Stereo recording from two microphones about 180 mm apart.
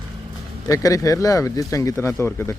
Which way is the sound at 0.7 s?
20° left (ahead or behind).